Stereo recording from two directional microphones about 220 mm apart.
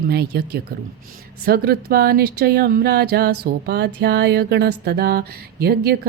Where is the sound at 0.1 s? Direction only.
45° right (ahead or behind).